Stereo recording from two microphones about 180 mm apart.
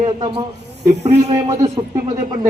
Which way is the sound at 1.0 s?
35° right (ahead or behind).